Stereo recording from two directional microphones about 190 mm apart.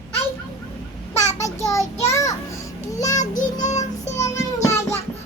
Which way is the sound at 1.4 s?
15° left (ahead or behind).